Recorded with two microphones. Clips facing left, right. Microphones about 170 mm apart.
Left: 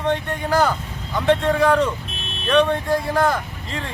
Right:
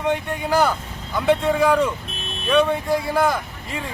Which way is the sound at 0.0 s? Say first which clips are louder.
Even; 10° right (ahead or behind).